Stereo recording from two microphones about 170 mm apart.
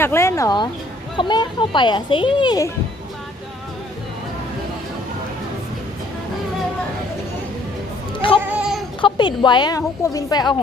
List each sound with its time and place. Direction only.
0.0 s a woman's voice: 15° left (ahead or behind)
8.4 s goat: 5° right (ahead or behind)
9.0 s a woman's voice: 30° left (ahead or behind)